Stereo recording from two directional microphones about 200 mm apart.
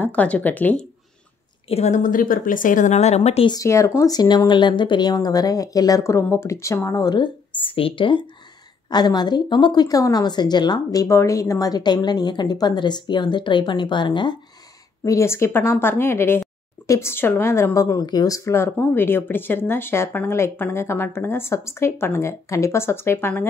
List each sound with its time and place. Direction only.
0.0 s a woman's voice: 5° left (ahead or behind)
1.7 s a woman's voice: 35° left (ahead or behind)
3.5 s a woman's voice: 15° left (ahead or behind)